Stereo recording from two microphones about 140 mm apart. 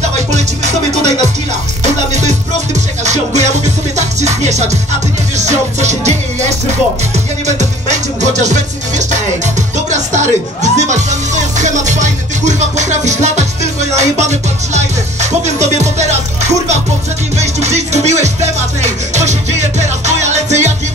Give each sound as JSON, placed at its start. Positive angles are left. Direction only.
{"t": 0.3, "sound": "music", "side_deg": -55}
{"t": 7.4, "sound": "music", "side_deg": -55}